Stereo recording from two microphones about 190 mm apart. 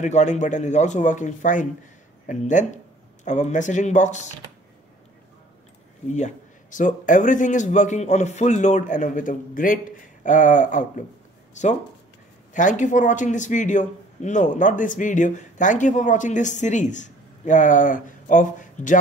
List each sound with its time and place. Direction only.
0.0 s a man's voice: 40° left (ahead or behind)
6.1 s a man's voice: 40° left (ahead or behind)